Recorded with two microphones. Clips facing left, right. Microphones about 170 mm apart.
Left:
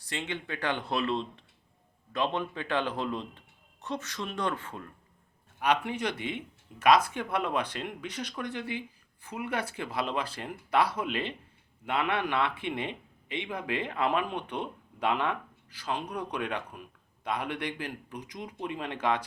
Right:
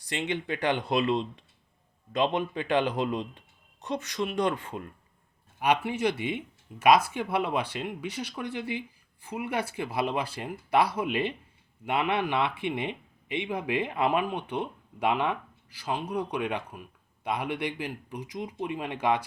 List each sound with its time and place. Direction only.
0.0 s speech: 15° right (ahead or behind)